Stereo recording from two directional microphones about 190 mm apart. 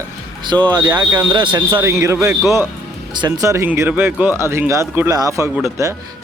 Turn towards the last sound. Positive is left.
turn(degrees=-15)  # may be behind; listen again after turning